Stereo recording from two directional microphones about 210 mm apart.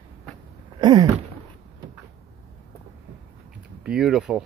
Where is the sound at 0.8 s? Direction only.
20° right (ahead or behind).